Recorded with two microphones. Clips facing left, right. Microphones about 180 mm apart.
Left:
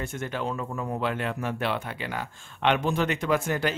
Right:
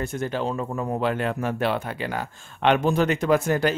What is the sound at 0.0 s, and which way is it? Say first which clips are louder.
Speech: right 5 dB; 35° right (ahead or behind).